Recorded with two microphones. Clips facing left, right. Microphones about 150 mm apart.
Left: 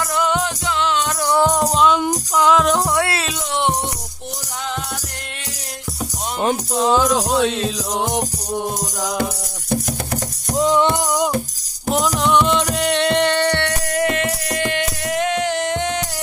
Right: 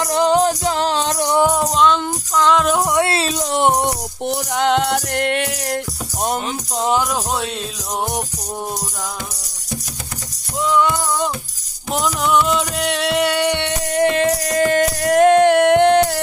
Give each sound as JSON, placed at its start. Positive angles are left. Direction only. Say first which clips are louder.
{"t": 0.0, "sound": "music", "louder": "right 5 dB", "side_deg": -30}
{"t": 1.2, "sound": "music", "louder": "even", "side_deg": -15}
{"t": 1.6, "sound": "music", "louder": "even", "side_deg": 5}
{"t": 2.7, "sound": "music", "louder": "right 1 dB", "side_deg": -10}
{"t": 3.0, "sound": "music", "louder": "right 3 dB", "side_deg": -25}
{"t": 3.5, "sound": "music", "louder": "right 4 dB", "side_deg": -50}
{"t": 6.7, "sound": "music", "louder": "even", "side_deg": -20}
{"t": 7.3, "sound": "music", "louder": "left 6 dB", "side_deg": 90}
{"t": 10.6, "sound": "music", "louder": "left 1 dB", "side_deg": 30}
{"t": 11.9, "sound": "music", "louder": "left 1 dB", "side_deg": 0}
{"t": 14.2, "sound": "music", "louder": "right 5 dB", "side_deg": -35}